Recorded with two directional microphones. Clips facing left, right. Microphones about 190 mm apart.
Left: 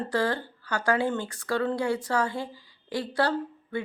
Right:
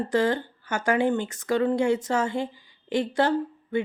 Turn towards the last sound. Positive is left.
turn(degrees=-20)  # may be behind; listen again after turning